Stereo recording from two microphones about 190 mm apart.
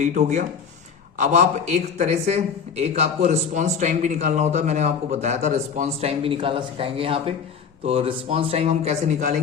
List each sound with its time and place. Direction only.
0.0 s a man's voice: 40° right (ahead or behind)